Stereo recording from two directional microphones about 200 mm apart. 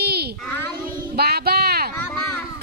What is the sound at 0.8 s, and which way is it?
Child singing, 50° right (ahead or behind).